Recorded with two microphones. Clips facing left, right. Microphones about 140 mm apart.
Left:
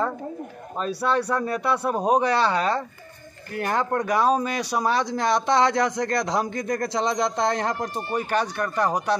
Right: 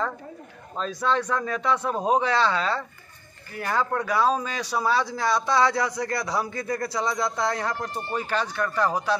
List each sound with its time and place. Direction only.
0.7 s speech: 10° left (ahead or behind)
4.0 s a man's voice: 15° left (ahead or behind)